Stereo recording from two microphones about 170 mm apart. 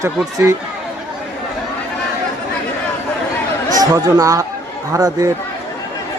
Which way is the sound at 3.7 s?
20° right (ahead or behind).